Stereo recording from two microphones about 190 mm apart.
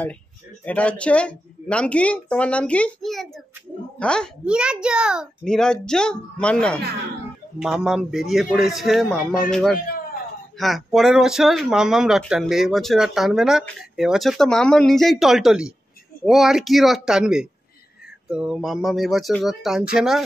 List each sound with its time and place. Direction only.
0.7 s speech: 5° left (ahead or behind)